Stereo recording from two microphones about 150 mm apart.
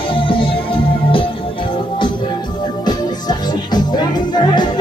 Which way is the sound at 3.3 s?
30° left (ahead or behind).